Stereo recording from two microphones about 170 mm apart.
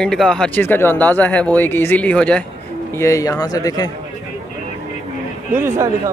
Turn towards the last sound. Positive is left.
turn(degrees=-15)  # may be behind; listen again after turning